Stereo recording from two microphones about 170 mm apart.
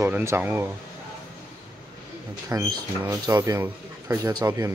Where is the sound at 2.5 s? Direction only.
20° right (ahead or behind).